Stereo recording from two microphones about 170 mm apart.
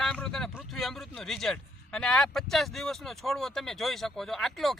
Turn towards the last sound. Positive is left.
turn(degrees=0)  # may be behind; listen again after turning